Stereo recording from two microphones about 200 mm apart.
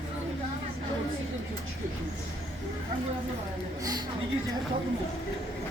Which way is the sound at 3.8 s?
20° right (ahead or behind).